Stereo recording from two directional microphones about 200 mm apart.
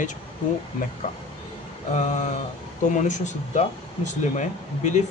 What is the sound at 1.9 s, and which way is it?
A man's voice, 35° left (ahead or behind).